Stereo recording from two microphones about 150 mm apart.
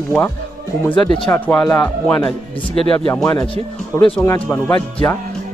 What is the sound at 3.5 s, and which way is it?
Speech, 35° left (ahead or behind).